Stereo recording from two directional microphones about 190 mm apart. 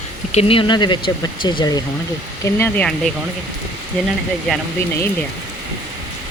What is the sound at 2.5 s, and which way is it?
Speech, 10° left (ahead or behind).